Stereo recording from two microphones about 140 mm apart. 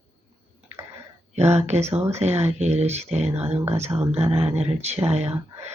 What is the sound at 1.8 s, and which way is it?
Speech, 20° right (ahead or behind).